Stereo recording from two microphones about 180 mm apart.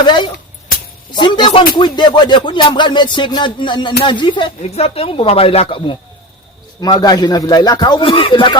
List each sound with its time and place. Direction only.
0.0 s speech: 25° left (ahead or behind)